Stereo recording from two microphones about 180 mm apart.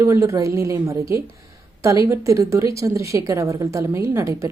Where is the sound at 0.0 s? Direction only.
15° right (ahead or behind).